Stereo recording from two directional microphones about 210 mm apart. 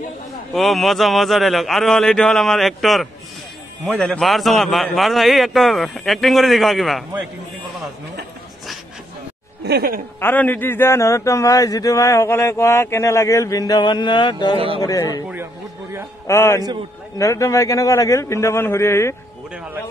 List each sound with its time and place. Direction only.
0.5 s a man's voice: centre (ahead or behind)
9.7 s speech: 45° right (ahead or behind)
10.2 s a man's voice: 10° left (ahead or behind)
16.3 s a man's voice: 15° left (ahead or behind)